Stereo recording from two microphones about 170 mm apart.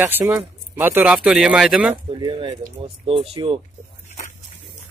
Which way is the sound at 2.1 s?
30° right (ahead or behind).